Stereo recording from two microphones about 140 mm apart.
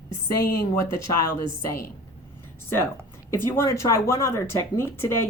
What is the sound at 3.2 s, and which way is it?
Speech, 15° left (ahead or behind).